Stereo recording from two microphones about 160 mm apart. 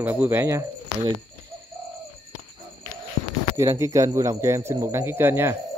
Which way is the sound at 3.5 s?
20° right (ahead or behind).